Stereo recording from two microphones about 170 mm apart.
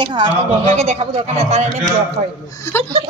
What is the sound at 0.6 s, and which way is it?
Speech, 40° right (ahead or behind).